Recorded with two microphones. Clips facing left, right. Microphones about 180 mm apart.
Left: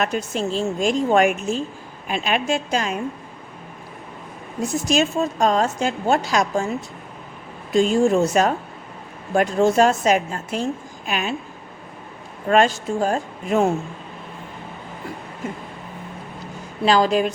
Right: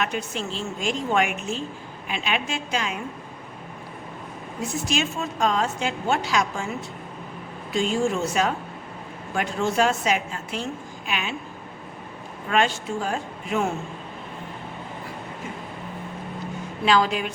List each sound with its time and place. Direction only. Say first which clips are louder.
0.0 s a woman's voice: left 5 dB; 40° left (ahead or behind)
4.6 s a woman's voice: left 6 dB; 40° left (ahead or behind)
7.7 s a woman's voice: left 7 dB; 45° left (ahead or behind)
12.5 s a woman's voice: left 6 dB; 40° left (ahead or behind)
16.8 s a woman's voice: left 4 dB; 35° left (ahead or behind)